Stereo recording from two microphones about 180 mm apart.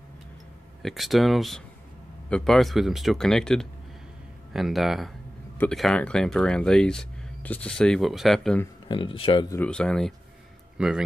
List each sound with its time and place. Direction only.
0.8 s speech: centre (ahead or behind)
8.8 s speech: 30° left (ahead or behind)
9.6 s speech: 5° left (ahead or behind)